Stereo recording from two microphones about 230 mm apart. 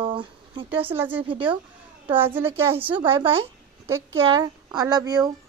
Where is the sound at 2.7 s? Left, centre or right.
Right.